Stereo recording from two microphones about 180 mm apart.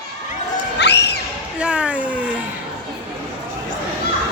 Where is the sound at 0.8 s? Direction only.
70° left (ahead or behind).